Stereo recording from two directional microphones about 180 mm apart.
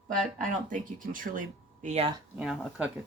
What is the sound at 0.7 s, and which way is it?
Speech, 50° right (ahead or behind).